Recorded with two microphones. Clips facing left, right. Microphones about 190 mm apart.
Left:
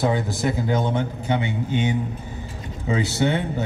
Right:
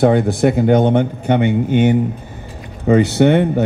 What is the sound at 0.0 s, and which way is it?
Speech, 60° right (ahead or behind).